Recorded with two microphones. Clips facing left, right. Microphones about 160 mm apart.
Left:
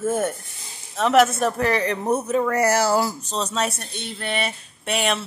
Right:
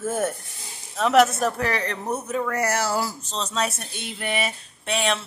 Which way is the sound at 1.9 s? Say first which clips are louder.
Left 6 dB; 25° left (ahead or behind).